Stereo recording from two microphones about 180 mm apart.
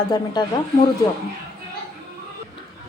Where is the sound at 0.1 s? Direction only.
25° left (ahead or behind).